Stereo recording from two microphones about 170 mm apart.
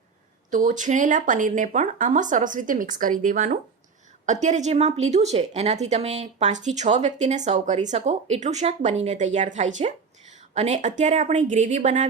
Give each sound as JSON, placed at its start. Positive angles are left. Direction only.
{"t": 0.5, "sound": "speech", "side_deg": -50}